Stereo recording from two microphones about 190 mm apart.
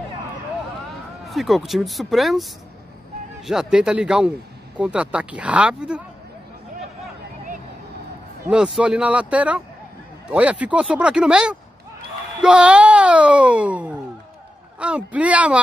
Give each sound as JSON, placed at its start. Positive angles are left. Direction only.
{"t": 1.3, "sound": "speech", "side_deg": 0}
{"t": 3.4, "sound": "speech", "side_deg": -5}
{"t": 8.5, "sound": "speech", "side_deg": -5}